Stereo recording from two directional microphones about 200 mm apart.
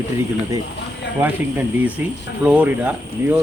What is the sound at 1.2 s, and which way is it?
Speech, 5° right (ahead or behind).